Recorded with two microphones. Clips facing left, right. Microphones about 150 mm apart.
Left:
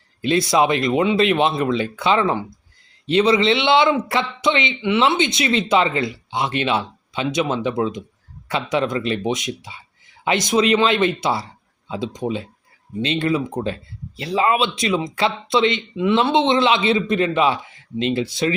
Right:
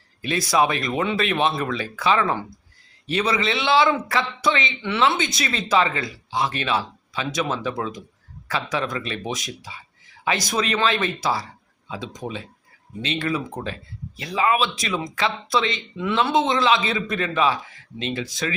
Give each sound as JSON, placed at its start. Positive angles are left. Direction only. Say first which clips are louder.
{"t": 0.2, "sound": "speech", "louder": "left 4 dB", "side_deg": 25}